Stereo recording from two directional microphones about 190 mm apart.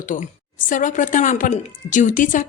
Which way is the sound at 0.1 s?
45° left (ahead or behind).